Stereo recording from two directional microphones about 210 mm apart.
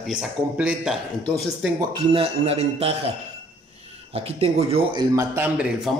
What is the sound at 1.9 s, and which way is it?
Speech, 25° right (ahead or behind).